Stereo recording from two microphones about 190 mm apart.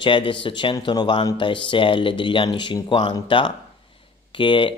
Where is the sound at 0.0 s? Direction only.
25° left (ahead or behind).